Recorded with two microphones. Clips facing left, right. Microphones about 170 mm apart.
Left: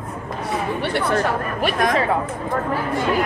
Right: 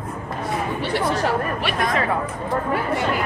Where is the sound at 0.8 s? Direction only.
60° left (ahead or behind).